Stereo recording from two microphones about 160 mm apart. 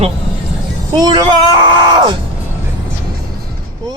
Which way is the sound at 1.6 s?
25° right (ahead or behind).